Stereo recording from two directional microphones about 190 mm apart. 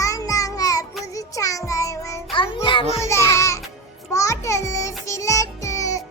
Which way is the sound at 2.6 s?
30° left (ahead or behind).